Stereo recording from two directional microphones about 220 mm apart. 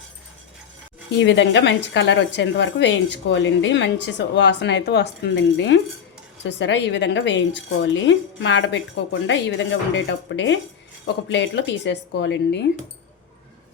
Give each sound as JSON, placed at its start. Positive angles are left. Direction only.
{"t": 1.2, "sound": "a woman's voice", "side_deg": 55}